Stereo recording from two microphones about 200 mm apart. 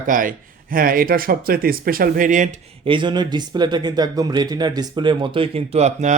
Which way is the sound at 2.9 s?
25° right (ahead or behind).